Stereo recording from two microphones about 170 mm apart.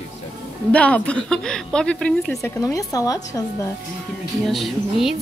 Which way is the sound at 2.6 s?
20° left (ahead or behind).